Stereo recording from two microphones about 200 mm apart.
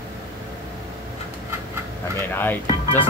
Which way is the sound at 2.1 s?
10° left (ahead or behind).